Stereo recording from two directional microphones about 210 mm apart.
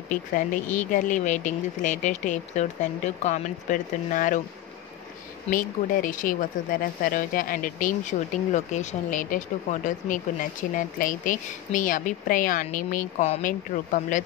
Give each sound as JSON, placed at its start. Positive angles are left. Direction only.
{"t": 0.1, "sound": "speech", "side_deg": 35}
{"t": 5.5, "sound": "speech", "side_deg": 40}